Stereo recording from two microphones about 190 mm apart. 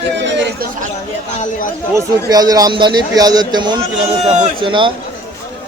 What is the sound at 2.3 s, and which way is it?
A man's voice, 20° right (ahead or behind).